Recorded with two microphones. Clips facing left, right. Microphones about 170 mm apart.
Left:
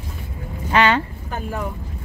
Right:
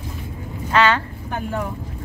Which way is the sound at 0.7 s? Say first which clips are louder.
Even; 15° left (ahead or behind).